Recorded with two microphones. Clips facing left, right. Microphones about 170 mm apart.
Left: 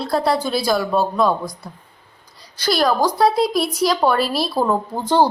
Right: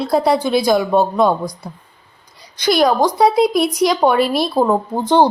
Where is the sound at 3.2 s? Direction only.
Centre (ahead or behind).